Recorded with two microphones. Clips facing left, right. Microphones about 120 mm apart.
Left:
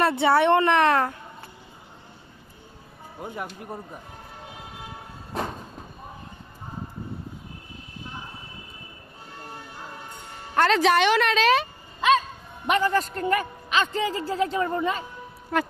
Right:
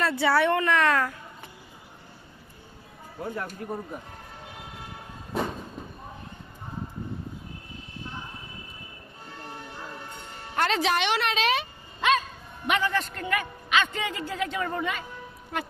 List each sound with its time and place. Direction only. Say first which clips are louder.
0.0 s a woman's voice: left 3 dB; 25° left (ahead or behind)
5.3 s a sound: right 1 dB; centre (ahead or behind)
10.5 s a man's voice: left 5 dB; 45° left (ahead or behind)
15.5 s speech: left 7 dB; 50° left (ahead or behind)